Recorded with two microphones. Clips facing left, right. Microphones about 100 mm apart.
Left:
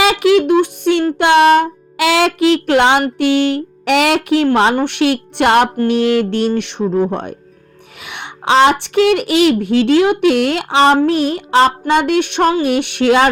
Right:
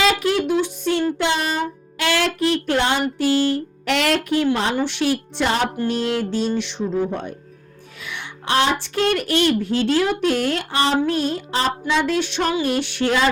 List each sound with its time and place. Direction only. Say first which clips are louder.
0.0 s music: left 7 dB; 90° left
4.4 s speech: left 7 dB; 60° left (ahead or behind)